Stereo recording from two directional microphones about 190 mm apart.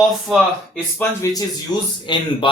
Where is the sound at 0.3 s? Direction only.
Centre (ahead or behind).